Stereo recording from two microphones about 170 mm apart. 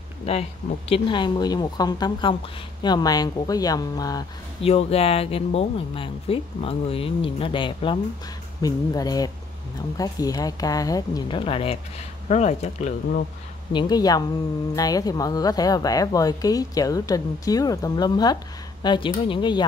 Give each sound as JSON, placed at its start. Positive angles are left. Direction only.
{"t": 0.3, "sound": "speech", "side_deg": 35}
{"t": 4.6, "sound": "speech", "side_deg": 35}
{"t": 13.7, "sound": "speech", "side_deg": 25}